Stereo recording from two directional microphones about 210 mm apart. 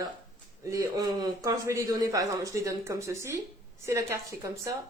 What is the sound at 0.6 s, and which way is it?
Speech, 15° right (ahead or behind).